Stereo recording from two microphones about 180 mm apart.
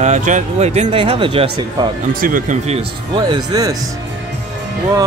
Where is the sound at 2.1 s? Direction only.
50° right (ahead or behind).